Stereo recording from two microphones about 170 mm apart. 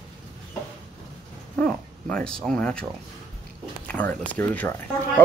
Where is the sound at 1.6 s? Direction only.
5° left (ahead or behind).